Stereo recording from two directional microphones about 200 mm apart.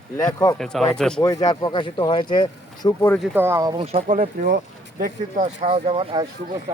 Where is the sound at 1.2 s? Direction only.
20° left (ahead or behind).